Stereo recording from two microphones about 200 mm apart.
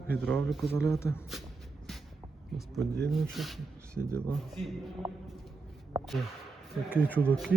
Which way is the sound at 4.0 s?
10° right (ahead or behind).